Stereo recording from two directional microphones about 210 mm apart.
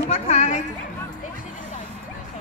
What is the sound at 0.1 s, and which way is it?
Chatter, 30° left (ahead or behind).